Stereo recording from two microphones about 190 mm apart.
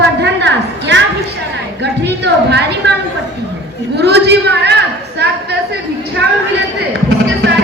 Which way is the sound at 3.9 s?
60° right (ahead or behind).